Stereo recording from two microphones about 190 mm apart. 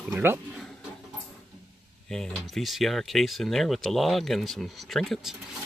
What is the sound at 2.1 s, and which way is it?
Speech, centre (ahead or behind).